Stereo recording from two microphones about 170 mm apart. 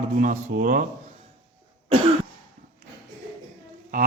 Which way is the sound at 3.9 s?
50° right (ahead or behind).